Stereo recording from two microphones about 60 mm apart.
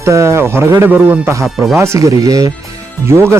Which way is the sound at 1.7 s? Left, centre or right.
Right.